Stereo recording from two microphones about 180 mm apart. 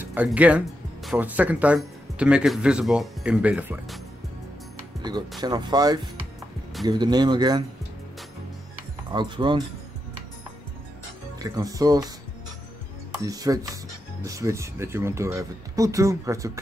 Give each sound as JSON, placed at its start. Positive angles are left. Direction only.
{"t": 0.0, "sound": "speech", "side_deg": -10}
{"t": 5.4, "sound": "speech", "side_deg": -25}
{"t": 9.1, "sound": "speech", "side_deg": -25}
{"t": 11.3, "sound": "speech", "side_deg": -20}
{"t": 13.2, "sound": "speech", "side_deg": -20}